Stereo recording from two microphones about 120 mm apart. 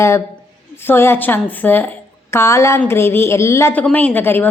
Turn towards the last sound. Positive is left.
turn(degrees=15)  # may be behind; listen again after turning